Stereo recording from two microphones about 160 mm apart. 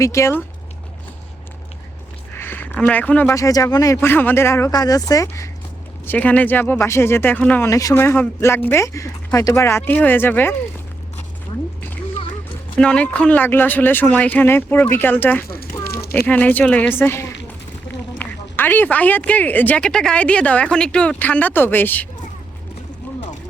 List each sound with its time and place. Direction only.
0.0 s a man's voice: 15° left (ahead or behind)
2.3 s a man's voice: 15° left (ahead or behind)
6.1 s a man's voice: 10° left (ahead or behind)
7.7 s a man's voice: 20° left (ahead or behind)
12.8 s a man's voice: 5° left (ahead or behind)